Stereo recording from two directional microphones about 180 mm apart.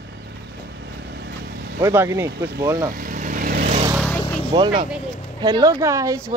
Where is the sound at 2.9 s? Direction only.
50° right (ahead or behind).